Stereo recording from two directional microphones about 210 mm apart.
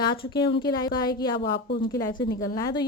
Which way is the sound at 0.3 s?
20° left (ahead or behind).